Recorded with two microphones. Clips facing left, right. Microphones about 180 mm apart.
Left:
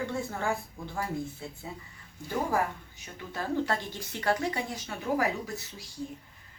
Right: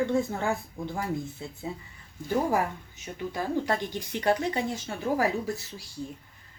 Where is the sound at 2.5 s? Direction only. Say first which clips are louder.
Right 2 dB; 15° right (ahead or behind).